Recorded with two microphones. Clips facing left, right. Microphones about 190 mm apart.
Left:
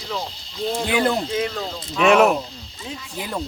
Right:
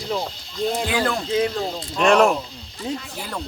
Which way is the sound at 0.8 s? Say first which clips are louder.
Left 2 dB; 20° left (ahead or behind).